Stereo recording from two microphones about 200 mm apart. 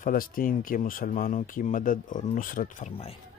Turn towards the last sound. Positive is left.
turn(degrees=35)  # may be behind; listen again after turning